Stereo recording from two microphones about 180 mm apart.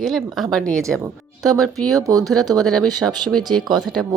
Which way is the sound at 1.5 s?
Centre (ahead or behind).